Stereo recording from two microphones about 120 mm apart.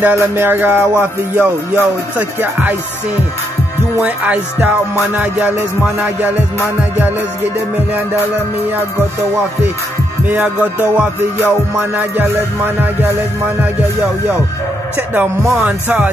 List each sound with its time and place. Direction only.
0.0 s music: 20° right (ahead or behind)
4.0 s music: 10° right (ahead or behind)
10.2 s music: 15° right (ahead or behind)
15.0 s music: 15° right (ahead or behind)